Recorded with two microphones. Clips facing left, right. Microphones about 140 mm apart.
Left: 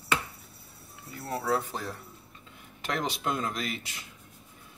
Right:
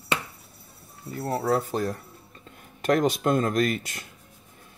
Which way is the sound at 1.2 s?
50° right (ahead or behind).